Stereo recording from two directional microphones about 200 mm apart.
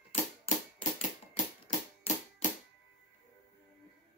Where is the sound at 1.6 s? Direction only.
30° left (ahead or behind).